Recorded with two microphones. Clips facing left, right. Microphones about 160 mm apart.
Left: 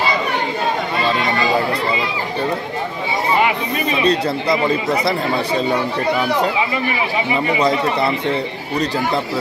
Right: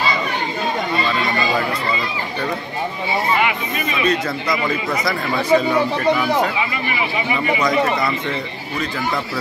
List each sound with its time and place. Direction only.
3.4 s speech: 35° left (ahead or behind)
7.5 s a man's voice: 30° left (ahead or behind)